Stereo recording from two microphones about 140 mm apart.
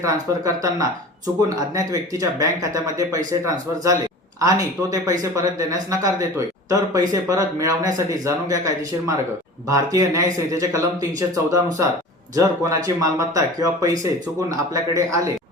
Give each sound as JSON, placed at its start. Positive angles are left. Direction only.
{"t": 0.0, "sound": "speech", "side_deg": -25}